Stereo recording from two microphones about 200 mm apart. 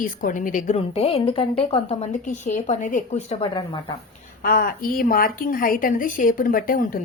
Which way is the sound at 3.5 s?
25° left (ahead or behind).